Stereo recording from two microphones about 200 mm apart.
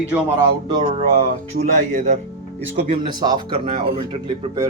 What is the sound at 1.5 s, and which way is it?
Speech, 40° right (ahead or behind).